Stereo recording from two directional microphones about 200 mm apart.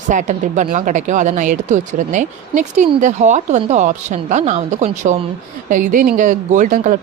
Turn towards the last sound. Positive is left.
turn(degrees=-40)  # may be behind; listen again after turning